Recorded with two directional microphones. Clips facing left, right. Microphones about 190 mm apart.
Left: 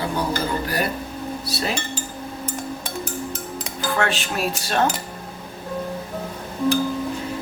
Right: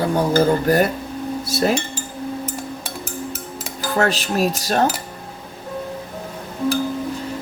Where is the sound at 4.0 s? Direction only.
40° right (ahead or behind).